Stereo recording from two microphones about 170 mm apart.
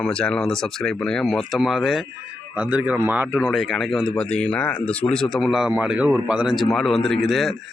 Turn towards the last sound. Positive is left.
turn(degrees=0)  # may be behind; listen again after turning